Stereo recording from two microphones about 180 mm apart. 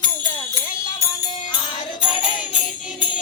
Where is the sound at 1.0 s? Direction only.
20° left (ahead or behind).